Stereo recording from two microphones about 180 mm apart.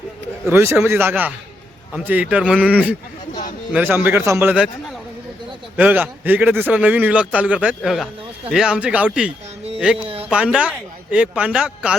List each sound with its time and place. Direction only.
0.5 s a man's voice: 15° right (ahead or behind)
5.7 s a man's voice: 10° right (ahead or behind)
10.0 s speech: 30° right (ahead or behind)
10.2 s a man's voice: 5° right (ahead or behind)